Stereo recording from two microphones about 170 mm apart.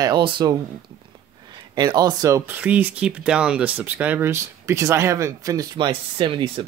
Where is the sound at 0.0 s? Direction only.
25° right (ahead or behind).